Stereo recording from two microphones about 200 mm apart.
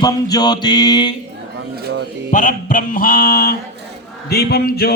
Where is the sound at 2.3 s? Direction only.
40° left (ahead or behind).